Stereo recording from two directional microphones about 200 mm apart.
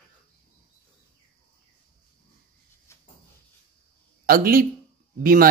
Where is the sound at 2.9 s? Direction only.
15° left (ahead or behind).